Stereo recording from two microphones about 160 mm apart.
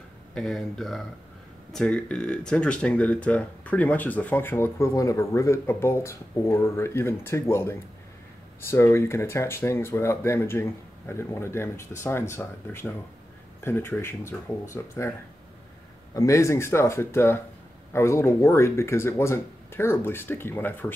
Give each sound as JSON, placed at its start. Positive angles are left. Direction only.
{"t": 0.3, "sound": "speech", "side_deg": 0}